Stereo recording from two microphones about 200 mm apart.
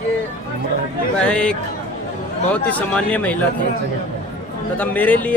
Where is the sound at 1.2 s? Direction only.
5° left (ahead or behind).